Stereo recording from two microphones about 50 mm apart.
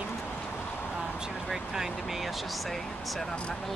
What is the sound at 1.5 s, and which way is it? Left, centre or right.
Speech, centre.